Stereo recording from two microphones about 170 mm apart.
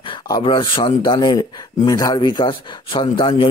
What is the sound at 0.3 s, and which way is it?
A man's voice, 30° left (ahead or behind).